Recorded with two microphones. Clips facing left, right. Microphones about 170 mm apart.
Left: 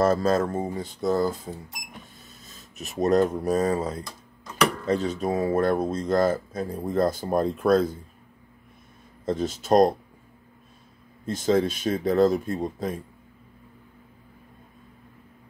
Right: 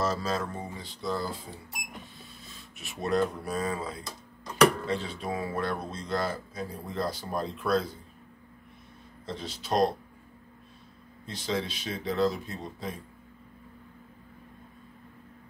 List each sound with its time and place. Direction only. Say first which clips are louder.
0.0 s speech: left 9 dB; 50° left (ahead or behind)
9.2 s speech: left 11 dB; 45° left (ahead or behind)
11.2 s speech: left 10 dB; 45° left (ahead or behind)